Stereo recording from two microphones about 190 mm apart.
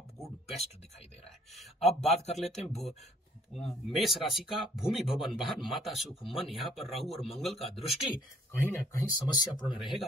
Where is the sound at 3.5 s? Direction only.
Centre (ahead or behind).